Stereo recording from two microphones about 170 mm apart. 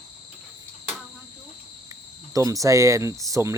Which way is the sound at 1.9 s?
20° right (ahead or behind).